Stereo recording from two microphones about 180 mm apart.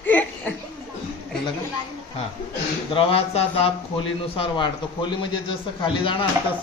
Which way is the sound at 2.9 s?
35° left (ahead or behind).